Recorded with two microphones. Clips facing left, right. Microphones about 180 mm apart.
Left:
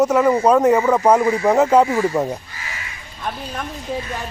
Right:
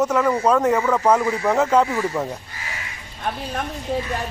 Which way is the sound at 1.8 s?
30° left (ahead or behind).